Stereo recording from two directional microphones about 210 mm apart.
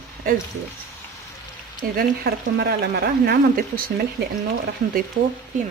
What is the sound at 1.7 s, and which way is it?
Speech, 45° right (ahead or behind).